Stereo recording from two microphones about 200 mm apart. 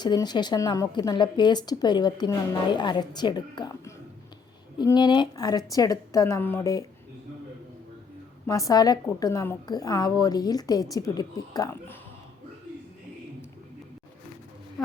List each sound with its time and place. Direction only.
0.0 s a woman's voice: 20° left (ahead or behind)
8.4 s a woman's voice: 15° left (ahead or behind)